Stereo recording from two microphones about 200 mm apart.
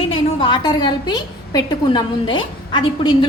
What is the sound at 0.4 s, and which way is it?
A woman's voice, 20° left (ahead or behind).